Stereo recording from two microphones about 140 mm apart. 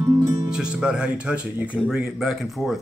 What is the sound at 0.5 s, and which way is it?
Speech, 5° right (ahead or behind).